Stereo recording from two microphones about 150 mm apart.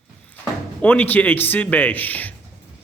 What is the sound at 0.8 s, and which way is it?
Speech, 10° left (ahead or behind).